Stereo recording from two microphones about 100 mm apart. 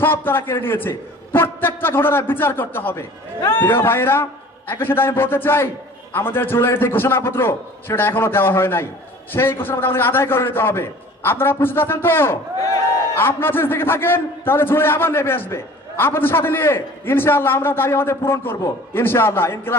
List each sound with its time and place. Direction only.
0.0 s a man's voice: 20° left (ahead or behind)
3.3 s a man's voice: 35° left (ahead or behind)
3.6 s a man's voice: 20° left (ahead or behind)